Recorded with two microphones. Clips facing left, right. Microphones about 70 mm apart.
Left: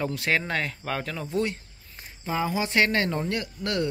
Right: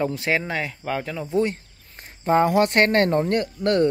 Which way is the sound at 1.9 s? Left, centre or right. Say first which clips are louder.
Right 10 dB; right.